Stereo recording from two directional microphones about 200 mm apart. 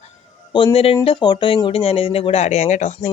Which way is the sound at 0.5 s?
25° left (ahead or behind).